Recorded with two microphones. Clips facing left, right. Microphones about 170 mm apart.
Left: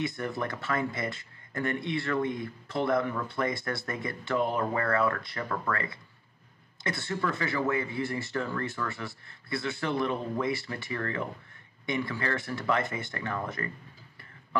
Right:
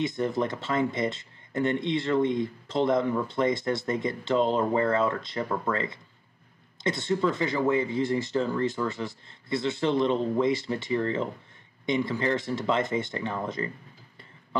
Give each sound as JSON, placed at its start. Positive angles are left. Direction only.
{"t": 0.0, "sound": "speech", "side_deg": -20}